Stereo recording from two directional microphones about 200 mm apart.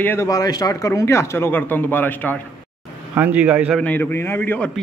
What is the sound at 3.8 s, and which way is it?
Speech, 10° left (ahead or behind).